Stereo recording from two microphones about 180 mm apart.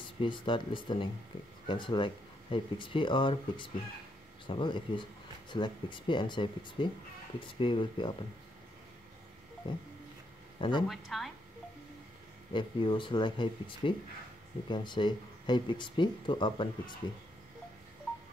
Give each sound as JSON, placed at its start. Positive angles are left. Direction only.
{"t": 0.0, "sound": "speech", "side_deg": 25}
{"t": 9.6, "sound": "speech", "side_deg": 25}
{"t": 10.9, "sound": "a woman's voice", "side_deg": 0}
{"t": 12.5, "sound": "speech", "side_deg": 30}